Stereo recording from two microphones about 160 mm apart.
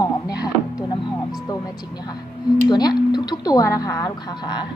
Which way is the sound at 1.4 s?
25° left (ahead or behind).